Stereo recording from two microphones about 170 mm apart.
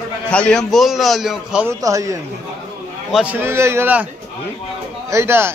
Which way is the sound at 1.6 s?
20° right (ahead or behind).